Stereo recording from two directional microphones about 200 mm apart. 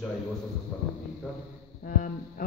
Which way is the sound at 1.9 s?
40° left (ahead or behind).